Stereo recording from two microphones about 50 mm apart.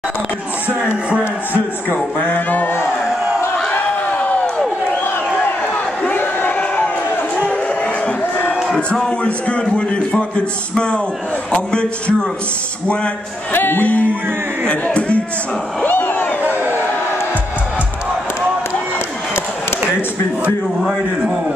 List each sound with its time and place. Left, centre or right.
2.1 s a sound: left
6.0 s crowd: left
7.3 s a sound: left
8.7 s speech: centre
9.2 s a man's voice: left
11.5 s a man's voice: centre
13.5 s music: left
14.7 s speech: left
15.8 s a sound: left